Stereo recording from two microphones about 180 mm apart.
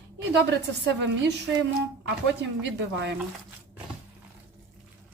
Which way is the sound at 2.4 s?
75° right (ahead or behind).